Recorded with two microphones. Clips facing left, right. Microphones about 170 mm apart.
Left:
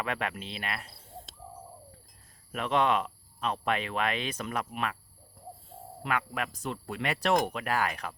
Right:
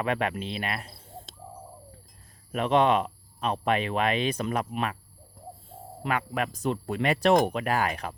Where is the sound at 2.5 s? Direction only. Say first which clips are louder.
Right 5 dB; 20° right (ahead or behind).